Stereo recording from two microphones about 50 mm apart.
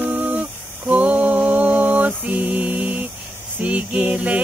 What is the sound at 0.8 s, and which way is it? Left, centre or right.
Mantra, right.